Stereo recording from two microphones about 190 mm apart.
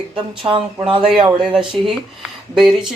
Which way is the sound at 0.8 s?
25° right (ahead or behind).